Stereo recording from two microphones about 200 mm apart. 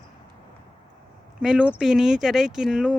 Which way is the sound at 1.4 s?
5° right (ahead or behind).